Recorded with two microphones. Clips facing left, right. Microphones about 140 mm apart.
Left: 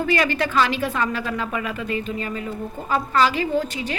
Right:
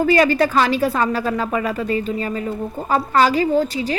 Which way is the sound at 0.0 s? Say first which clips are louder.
Right 6 dB; 35° right (ahead or behind).